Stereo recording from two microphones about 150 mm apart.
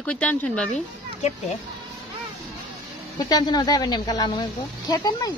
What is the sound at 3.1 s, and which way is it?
Speech, 25° left (ahead or behind).